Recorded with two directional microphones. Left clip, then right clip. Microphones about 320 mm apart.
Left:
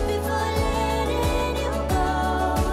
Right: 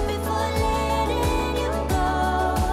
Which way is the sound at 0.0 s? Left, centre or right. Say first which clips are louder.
Even; centre.